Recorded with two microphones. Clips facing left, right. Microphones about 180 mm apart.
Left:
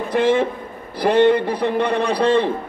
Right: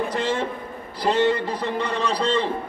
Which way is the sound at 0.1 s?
60° left (ahead or behind).